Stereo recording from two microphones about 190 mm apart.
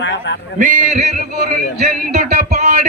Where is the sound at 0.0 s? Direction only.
70° left (ahead or behind).